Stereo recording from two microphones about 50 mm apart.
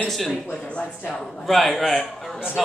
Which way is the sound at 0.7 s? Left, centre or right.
Left.